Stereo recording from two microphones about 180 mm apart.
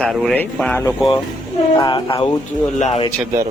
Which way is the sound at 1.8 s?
25° left (ahead or behind).